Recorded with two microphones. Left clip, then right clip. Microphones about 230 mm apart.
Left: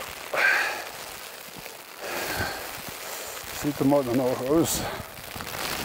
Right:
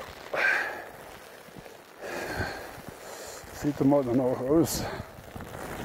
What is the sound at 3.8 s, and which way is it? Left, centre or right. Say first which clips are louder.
Speech: left 1 dB; centre.